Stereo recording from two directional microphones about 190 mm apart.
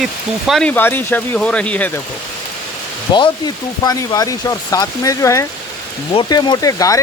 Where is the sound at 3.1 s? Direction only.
25° left (ahead or behind).